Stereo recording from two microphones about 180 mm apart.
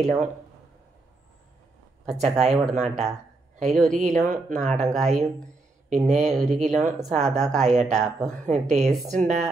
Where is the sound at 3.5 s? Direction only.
40° right (ahead or behind).